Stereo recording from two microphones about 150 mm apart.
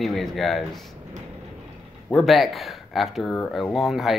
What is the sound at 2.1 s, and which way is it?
Speech, centre (ahead or behind).